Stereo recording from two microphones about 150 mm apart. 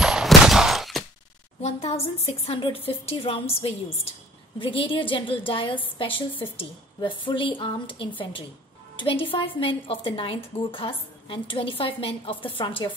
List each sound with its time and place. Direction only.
0.0 s fusillade: 5° right (ahead or behind)
1.6 s a woman's voice: 45° left (ahead or behind)